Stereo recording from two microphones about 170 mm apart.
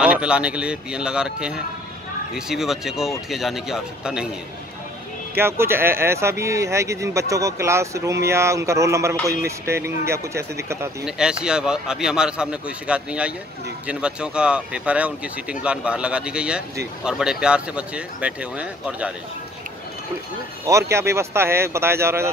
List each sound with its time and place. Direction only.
0.0 s speech: 5° right (ahead or behind)
5.4 s speech: 15° right (ahead or behind)
11.1 s speech: 5° right (ahead or behind)
20.6 s speech: 15° right (ahead or behind)